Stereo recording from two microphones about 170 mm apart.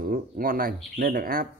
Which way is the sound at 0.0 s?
55° right (ahead or behind).